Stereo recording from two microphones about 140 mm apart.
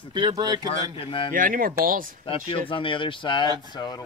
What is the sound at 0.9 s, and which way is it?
Speech, 40° left (ahead or behind).